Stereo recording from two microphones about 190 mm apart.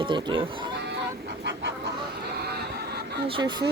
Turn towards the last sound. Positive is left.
turn(degrees=-25)  # may be behind; listen again after turning